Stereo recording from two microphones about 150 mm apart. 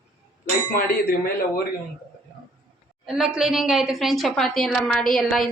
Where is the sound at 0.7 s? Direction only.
75° left (ahead or behind).